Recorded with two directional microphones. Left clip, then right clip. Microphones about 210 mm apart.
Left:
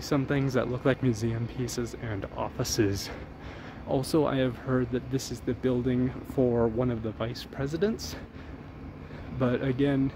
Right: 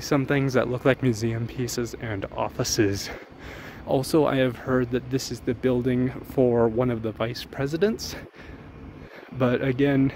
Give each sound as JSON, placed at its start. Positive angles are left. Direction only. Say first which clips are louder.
{"t": 0.0, "sound": "speech", "louder": "right 5 dB", "side_deg": -30}
{"t": 9.4, "sound": "speech", "louder": "right 5 dB", "side_deg": -30}